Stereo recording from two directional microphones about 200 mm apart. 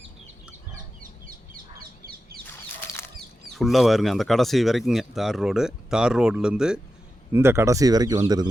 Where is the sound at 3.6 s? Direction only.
Centre (ahead or behind).